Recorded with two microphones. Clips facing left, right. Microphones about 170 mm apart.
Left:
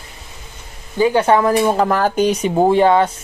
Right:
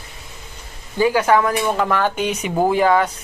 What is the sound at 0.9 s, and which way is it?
Speech, 25° left (ahead or behind).